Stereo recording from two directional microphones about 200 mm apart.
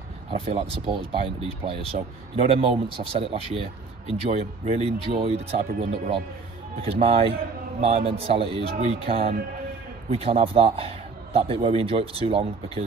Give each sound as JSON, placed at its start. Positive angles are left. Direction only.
{"t": 0.3, "sound": "a man's voice", "side_deg": -30}